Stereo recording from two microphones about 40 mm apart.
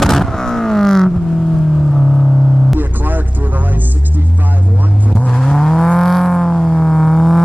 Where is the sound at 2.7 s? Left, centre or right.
Right.